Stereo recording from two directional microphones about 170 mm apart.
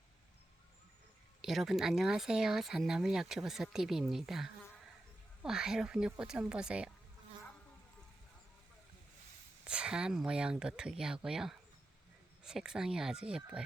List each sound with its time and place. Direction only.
1.4 s speech: centre (ahead or behind)
9.6 s speech: 5° right (ahead or behind)